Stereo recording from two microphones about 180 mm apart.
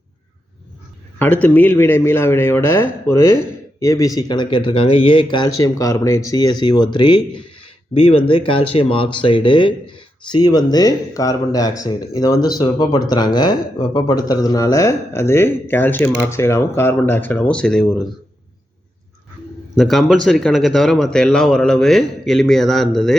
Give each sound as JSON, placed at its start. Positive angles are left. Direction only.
{"t": 1.2, "sound": "a man's voice", "side_deg": 10}
{"t": 19.7, "sound": "speech", "side_deg": 0}